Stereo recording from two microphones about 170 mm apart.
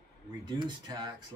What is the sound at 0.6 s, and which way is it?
Speech, 25° right (ahead or behind).